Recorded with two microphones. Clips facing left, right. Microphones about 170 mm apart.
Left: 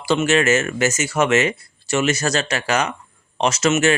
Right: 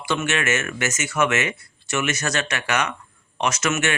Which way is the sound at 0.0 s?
30° left (ahead or behind).